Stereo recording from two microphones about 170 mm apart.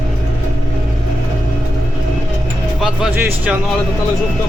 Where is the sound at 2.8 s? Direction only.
5° right (ahead or behind).